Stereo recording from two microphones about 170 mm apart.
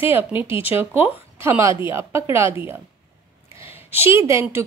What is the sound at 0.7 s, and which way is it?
Speech, 10° right (ahead or behind).